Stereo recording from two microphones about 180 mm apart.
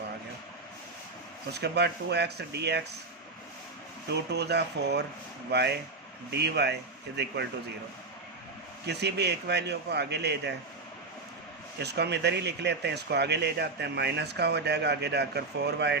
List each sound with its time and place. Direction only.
1.5 s speech: 65° right (ahead or behind)
4.1 s speech: 70° right (ahead or behind)
8.9 s speech: 70° right (ahead or behind)
11.8 s speech: 65° right (ahead or behind)